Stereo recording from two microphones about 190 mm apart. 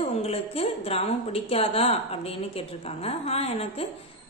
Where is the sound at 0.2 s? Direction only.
30° left (ahead or behind).